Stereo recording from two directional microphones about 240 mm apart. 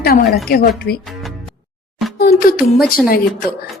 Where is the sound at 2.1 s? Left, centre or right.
Left.